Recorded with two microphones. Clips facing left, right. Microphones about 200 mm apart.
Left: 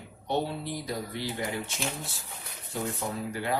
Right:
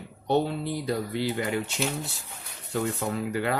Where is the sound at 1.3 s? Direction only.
70° right (ahead or behind).